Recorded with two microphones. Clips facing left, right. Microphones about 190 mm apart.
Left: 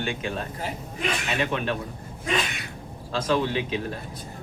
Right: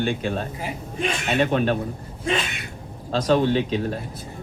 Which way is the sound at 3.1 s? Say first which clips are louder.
Right 5 dB; 40° right (ahead or behind).